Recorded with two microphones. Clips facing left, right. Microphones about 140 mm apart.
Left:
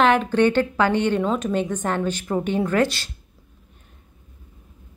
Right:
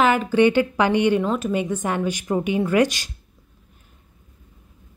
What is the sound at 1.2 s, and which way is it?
A woman's voice, centre (ahead or behind).